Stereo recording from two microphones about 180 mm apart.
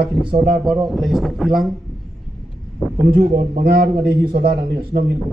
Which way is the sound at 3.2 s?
55° right (ahead or behind).